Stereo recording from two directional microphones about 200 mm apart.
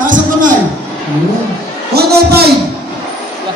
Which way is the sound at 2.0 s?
50° right (ahead or behind).